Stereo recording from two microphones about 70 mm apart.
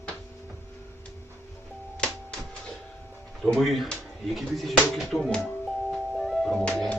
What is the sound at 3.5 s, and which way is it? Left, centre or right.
Speech, centre.